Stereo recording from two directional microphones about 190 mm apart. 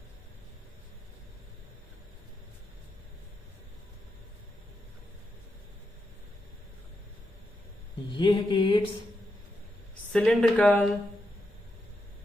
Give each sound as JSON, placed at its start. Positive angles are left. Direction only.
{"t": 8.1, "sound": "mantra", "side_deg": 25}
{"t": 10.1, "sound": "a woman's voice", "side_deg": 5}